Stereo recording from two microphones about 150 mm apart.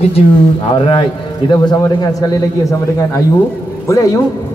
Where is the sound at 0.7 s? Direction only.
35° left (ahead or behind).